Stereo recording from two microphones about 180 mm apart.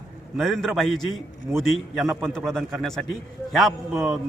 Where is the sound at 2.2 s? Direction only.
Centre (ahead or behind).